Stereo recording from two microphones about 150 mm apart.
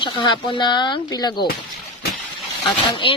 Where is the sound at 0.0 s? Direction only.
30° left (ahead or behind).